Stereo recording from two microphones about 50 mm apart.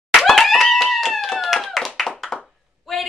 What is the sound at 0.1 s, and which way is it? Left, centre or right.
Clapping, centre.